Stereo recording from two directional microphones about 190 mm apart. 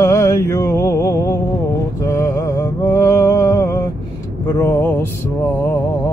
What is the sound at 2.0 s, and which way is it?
Mantra, 15° left (ahead or behind).